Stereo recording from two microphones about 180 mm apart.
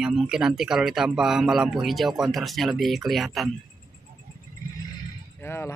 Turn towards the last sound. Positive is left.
turn(degrees=15)  # may be behind; listen again after turning